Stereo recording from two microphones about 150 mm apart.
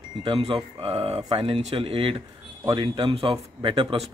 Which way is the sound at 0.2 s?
35° right (ahead or behind).